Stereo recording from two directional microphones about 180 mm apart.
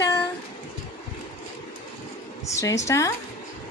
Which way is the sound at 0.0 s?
15° left (ahead or behind).